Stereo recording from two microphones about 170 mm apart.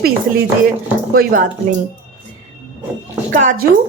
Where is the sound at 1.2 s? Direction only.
55° right (ahead or behind).